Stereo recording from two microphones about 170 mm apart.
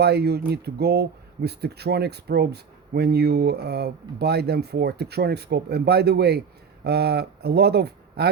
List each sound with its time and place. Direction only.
0.0 s speech: 75° right (ahead or behind)